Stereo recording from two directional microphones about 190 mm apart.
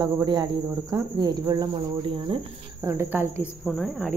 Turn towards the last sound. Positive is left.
turn(degrees=0)  # may be behind; listen again after turning